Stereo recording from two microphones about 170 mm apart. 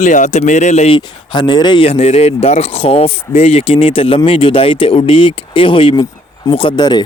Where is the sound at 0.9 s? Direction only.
30° left (ahead or behind).